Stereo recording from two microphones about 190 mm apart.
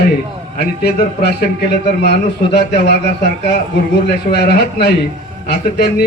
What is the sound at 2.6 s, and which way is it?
Speech, 60° left (ahead or behind).